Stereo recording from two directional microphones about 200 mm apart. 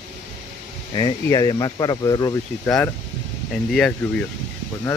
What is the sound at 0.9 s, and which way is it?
Speech, 20° left (ahead or behind).